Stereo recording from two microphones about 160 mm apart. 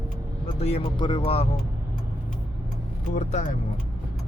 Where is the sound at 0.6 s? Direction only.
40° left (ahead or behind).